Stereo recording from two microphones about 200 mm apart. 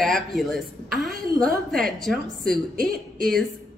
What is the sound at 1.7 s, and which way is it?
Speech, centre (ahead or behind).